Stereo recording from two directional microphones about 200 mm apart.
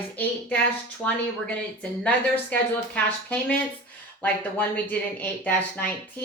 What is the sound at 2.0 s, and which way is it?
Speech, 5° left (ahead or behind).